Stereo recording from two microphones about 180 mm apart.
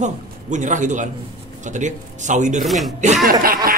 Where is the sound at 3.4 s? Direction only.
55° right (ahead or behind).